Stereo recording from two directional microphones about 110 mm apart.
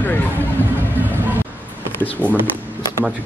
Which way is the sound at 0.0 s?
15° left (ahead or behind).